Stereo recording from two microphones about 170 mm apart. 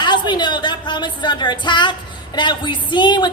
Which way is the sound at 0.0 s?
25° left (ahead or behind).